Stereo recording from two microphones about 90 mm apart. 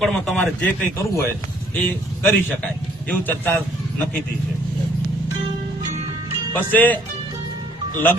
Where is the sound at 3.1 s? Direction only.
20° left (ahead or behind).